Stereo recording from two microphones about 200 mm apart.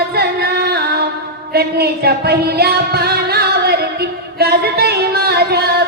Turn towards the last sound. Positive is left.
turn(degrees=-55)  # may be behind; listen again after turning